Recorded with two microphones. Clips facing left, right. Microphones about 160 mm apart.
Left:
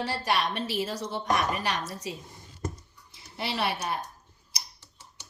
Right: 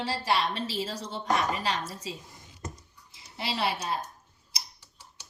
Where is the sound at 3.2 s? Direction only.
25° right (ahead or behind).